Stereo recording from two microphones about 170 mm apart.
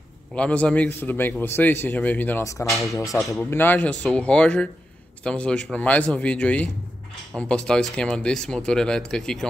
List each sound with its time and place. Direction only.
0.3 s a man's voice: 5° left (ahead or behind)